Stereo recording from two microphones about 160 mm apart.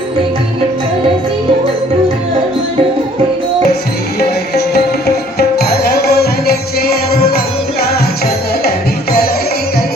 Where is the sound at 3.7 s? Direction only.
90° left.